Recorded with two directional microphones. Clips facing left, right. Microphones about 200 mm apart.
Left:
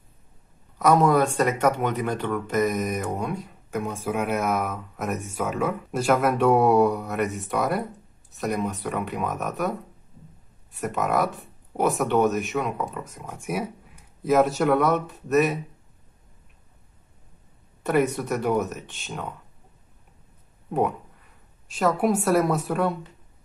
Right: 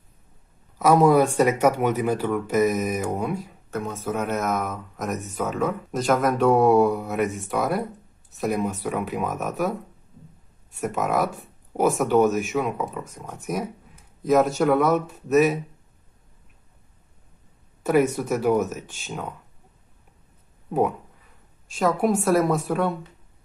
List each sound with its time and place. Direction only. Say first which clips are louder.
0.7 s speech: right 2 dB; 5° right (ahead or behind)
3.7 s speech: even; 10° left (ahead or behind)
17.8 s speech: right 2 dB; centre (ahead or behind)
21.7 s speech: right 1 dB; centre (ahead or behind)